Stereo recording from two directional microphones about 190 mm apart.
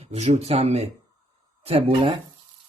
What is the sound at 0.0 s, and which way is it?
Speech, 35° right (ahead or behind).